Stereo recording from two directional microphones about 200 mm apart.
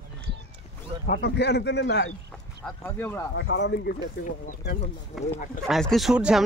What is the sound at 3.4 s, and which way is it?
Speech, 60° left (ahead or behind).